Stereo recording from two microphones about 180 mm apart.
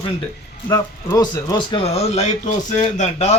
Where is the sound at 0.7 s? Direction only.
15° left (ahead or behind); by 3.3 s 40° left (ahead or behind).